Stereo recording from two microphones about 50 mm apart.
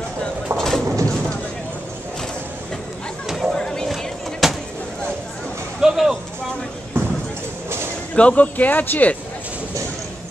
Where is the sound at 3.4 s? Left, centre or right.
Centre.